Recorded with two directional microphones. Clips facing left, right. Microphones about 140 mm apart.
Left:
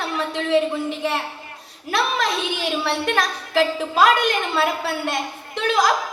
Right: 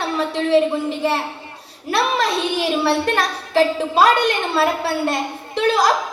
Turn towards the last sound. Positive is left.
turn(degrees=-35)  # may be behind; listen again after turning